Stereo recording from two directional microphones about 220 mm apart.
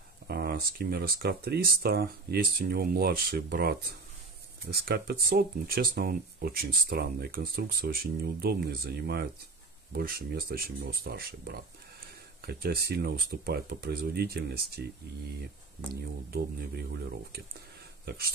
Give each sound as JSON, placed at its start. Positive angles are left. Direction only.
{"t": 0.3, "sound": "speech", "side_deg": -45}
{"t": 15.9, "sound": "speech", "side_deg": -45}
{"t": 18.0, "sound": "speech", "side_deg": -45}